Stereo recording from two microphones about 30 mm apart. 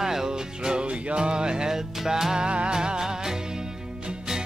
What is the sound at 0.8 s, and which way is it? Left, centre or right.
Music, right.